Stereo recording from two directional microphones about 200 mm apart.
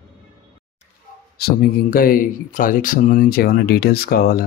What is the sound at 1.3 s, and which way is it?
Speech, 50° left (ahead or behind).